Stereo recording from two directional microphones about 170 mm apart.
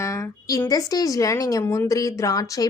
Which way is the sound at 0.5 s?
20° left (ahead or behind).